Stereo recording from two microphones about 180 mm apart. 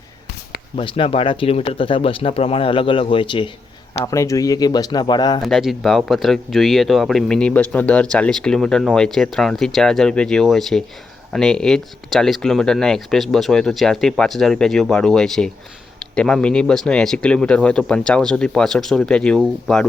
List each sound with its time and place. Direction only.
0.8 s speech: 30° left (ahead or behind)
4.0 s speech: 15° left (ahead or behind)
5.4 s speech: centre (ahead or behind)